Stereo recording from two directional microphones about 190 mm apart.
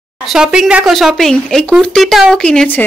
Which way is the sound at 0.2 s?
5° right (ahead or behind).